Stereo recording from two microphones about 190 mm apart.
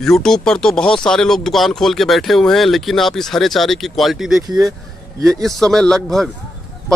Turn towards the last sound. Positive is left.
turn(degrees=0)  # may be behind; listen again after turning